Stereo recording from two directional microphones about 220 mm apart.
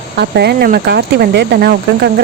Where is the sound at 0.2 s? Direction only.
50° right (ahead or behind).